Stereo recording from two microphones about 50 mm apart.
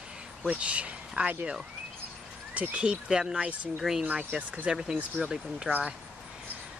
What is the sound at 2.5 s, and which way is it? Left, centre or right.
Speech, right.